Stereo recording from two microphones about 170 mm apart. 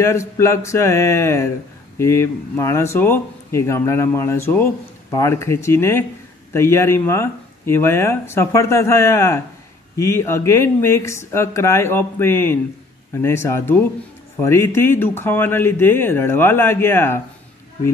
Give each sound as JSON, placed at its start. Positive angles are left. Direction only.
{"t": 0.0, "sound": "speech", "side_deg": 15}